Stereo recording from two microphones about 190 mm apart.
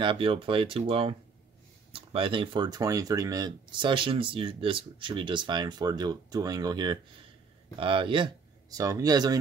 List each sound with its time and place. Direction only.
0.0 s speech: 25° right (ahead or behind)